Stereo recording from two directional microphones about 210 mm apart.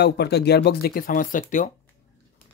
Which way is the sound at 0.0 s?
50° left (ahead or behind).